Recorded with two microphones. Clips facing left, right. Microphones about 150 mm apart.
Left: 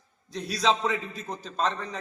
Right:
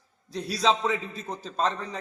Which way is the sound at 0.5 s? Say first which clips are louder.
Right 1 dB; 5° right (ahead or behind).